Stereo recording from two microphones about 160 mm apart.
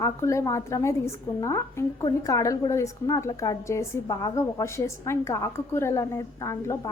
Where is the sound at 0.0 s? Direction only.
20° left (ahead or behind).